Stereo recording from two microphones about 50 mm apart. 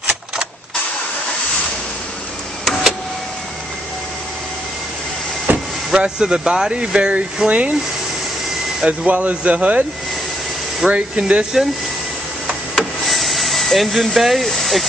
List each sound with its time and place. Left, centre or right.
2.6 s vehicle: centre
5.5 s vehicle: right
5.9 s speech: centre
8.8 s speech: right
10.9 s speech: right
12.7 s a sound: centre